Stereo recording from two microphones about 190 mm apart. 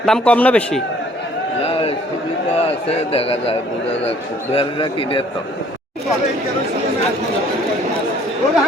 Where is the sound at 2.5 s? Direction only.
30° left (ahead or behind).